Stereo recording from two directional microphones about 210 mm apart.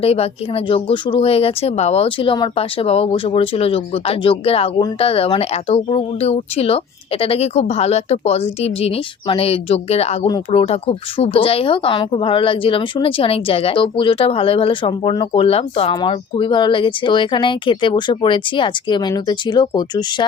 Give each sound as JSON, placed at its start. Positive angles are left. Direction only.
{"t": 0.0, "sound": "speech", "side_deg": 30}